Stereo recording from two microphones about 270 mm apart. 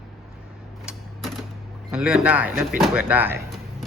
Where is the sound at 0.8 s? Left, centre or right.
Centre.